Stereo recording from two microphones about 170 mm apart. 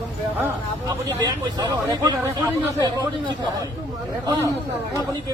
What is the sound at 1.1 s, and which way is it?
Speech, 25° right (ahead or behind).